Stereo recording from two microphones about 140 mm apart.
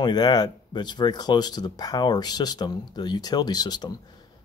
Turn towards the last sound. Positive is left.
turn(degrees=30)  # may be behind; listen again after turning